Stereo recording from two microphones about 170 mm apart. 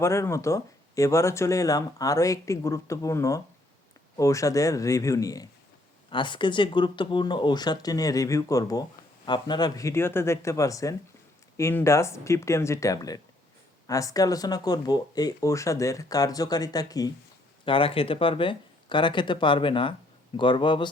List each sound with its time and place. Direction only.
0.0 s speech: 15° left (ahead or behind)
17.7 s speech: 30° left (ahead or behind)